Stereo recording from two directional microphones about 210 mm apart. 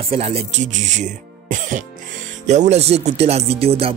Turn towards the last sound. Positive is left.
turn(degrees=-30)  # may be behind; listen again after turning